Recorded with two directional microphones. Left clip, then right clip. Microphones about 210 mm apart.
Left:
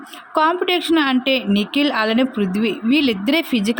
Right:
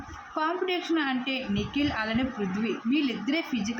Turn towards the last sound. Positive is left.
turn(degrees=50)  # may be behind; listen again after turning